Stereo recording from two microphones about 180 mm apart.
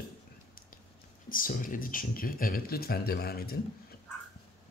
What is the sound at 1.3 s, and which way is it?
Speech, 50° left (ahead or behind).